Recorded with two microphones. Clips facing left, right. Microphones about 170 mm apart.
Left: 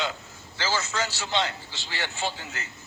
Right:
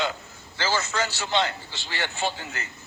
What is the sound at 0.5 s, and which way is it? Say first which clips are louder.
A man's voice: right 2 dB; 55° right (ahead or behind).